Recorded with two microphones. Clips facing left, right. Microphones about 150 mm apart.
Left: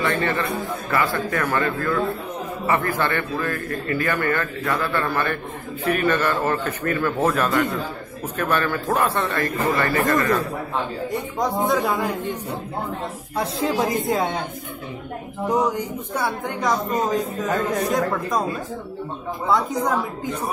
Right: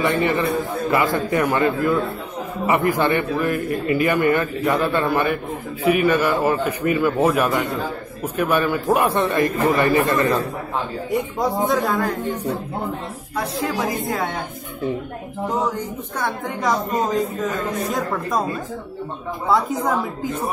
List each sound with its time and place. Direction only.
0.0 s a man's voice: 15° right (ahead or behind)
11.1 s speech: centre (ahead or behind)
13.4 s speech: 25° left (ahead or behind)
16.4 s speech: centre (ahead or behind)